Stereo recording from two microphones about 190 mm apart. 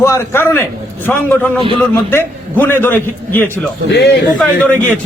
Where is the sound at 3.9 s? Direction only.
60° left (ahead or behind).